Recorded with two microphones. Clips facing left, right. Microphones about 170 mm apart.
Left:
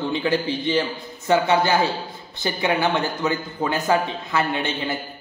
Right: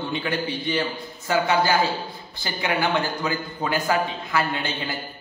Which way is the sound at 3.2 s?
25° left (ahead or behind).